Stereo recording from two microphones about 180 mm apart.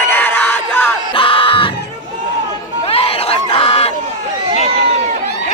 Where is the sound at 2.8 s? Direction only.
30° left (ahead or behind).